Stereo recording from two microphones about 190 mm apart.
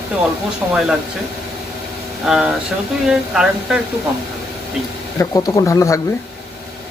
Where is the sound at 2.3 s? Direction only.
Centre (ahead or behind).